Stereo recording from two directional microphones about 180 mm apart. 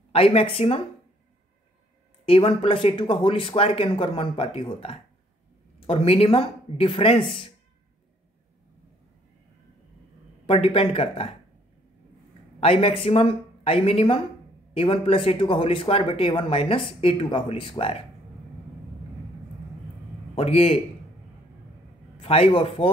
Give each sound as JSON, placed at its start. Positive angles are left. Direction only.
{"t": 0.1, "sound": "speech", "side_deg": 30}
{"t": 2.2, "sound": "speech", "side_deg": 30}
{"t": 10.4, "sound": "speech", "side_deg": 30}
{"t": 12.5, "sound": "speech", "side_deg": 30}
{"t": 20.3, "sound": "speech", "side_deg": 35}
{"t": 22.2, "sound": "speech", "side_deg": 30}